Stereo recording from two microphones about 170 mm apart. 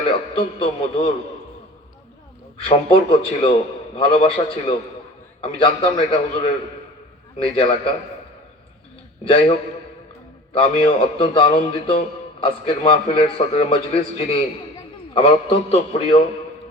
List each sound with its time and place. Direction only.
0.0 s a man's voice: 35° left (ahead or behind)
2.6 s a man's voice: 30° left (ahead or behind)
9.2 s a man's voice: 30° left (ahead or behind)